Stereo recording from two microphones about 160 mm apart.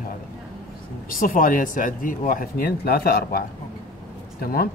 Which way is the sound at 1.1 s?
60° left (ahead or behind).